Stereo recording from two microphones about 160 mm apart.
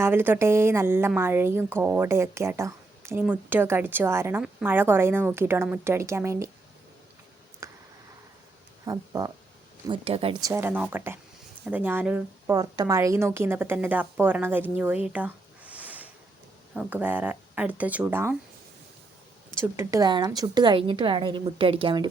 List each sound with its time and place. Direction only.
0.0 s a woman's voice: 15° right (ahead or behind)
7.6 s a sound: 20° right (ahead or behind)
8.9 s a woman's voice: 25° right (ahead or behind)
9.8 s speech: 35° right (ahead or behind)
10.4 s a woman's voice: 15° right (ahead or behind)
12.5 s a woman's voice: 25° right (ahead or behind)
15.0 s a sound: 10° right (ahead or behind)
16.7 s a woman's voice: 10° right (ahead or behind)
19.6 s a woman's voice: 15° right (ahead or behind); by 22.0 s 35° right (ahead or behind)